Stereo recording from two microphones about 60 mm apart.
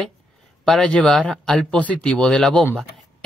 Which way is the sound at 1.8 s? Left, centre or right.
Left.